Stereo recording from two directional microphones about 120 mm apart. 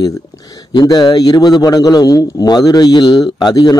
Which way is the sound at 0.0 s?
30° left (ahead or behind).